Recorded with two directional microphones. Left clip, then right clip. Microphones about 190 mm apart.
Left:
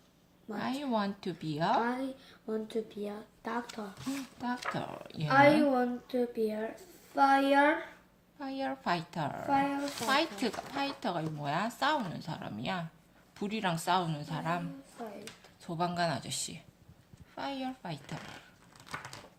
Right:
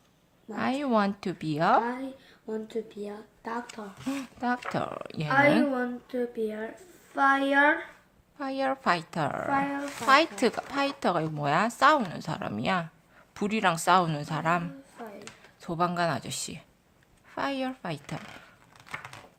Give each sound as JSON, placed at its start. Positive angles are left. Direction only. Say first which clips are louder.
{"t": 0.6, "sound": "speech", "louder": "right 7 dB", "side_deg": -50}
{"t": 1.8, "sound": "a woman's voice", "louder": "right 1 dB", "side_deg": 0}
{"t": 4.7, "sound": "speech", "louder": "right 7 dB", "side_deg": -50}
{"t": 5.3, "sound": "a woman's voice", "louder": "right 1 dB", "side_deg": 0}
{"t": 8.4, "sound": "speech", "louder": "right 8 dB", "side_deg": -45}
{"t": 9.5, "sound": "a woman's voice", "louder": "right 2 dB", "side_deg": 0}
{"t": 10.1, "sound": "speech", "louder": "right 9 dB", "side_deg": -45}
{"t": 14.9, "sound": "a sound", "louder": "even", "side_deg": 0}
{"t": 15.6, "sound": "speech", "louder": "right 5 dB", "side_deg": -40}
{"t": 18.9, "sound": "a sound", "louder": "right 3 dB", "side_deg": -15}